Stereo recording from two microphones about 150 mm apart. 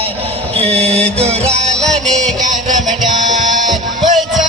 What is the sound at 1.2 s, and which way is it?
Music, 45° right (ahead or behind).